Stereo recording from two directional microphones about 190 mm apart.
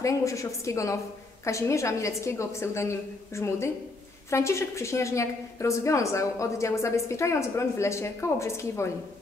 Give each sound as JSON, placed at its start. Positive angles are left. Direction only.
{"t": 0.0, "sound": "a woman's voice", "side_deg": 15}